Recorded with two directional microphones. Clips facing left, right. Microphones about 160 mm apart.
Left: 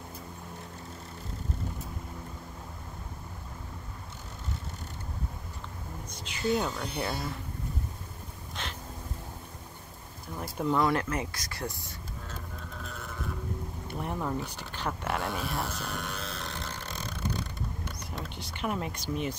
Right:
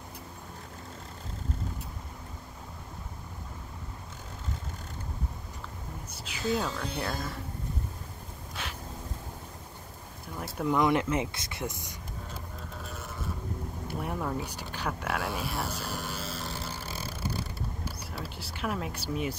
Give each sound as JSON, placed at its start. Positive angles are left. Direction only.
{"t": 6.3, "sound": "speech", "side_deg": 0}
{"t": 8.6, "sound": "a sound", "side_deg": -10}
{"t": 10.4, "sound": "speech", "side_deg": 0}
{"t": 10.8, "sound": "speech", "side_deg": -20}
{"t": 13.8, "sound": "a sound", "side_deg": -5}
{"t": 14.9, "sound": "speech", "side_deg": 0}
{"t": 15.8, "sound": "burping", "side_deg": -5}